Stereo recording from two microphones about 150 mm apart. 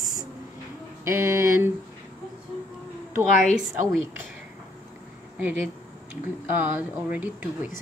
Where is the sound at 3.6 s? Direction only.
Centre (ahead or behind).